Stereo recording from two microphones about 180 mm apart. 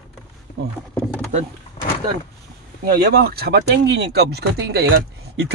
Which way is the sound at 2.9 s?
60° right (ahead or behind).